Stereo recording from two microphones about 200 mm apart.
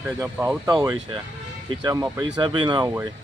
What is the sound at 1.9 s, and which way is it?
Speech, 15° right (ahead or behind).